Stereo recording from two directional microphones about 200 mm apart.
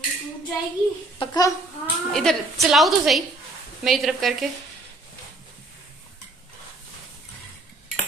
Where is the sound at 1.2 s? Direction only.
20° left (ahead or behind).